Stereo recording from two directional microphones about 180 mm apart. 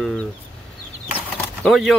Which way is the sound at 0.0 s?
5° left (ahead or behind).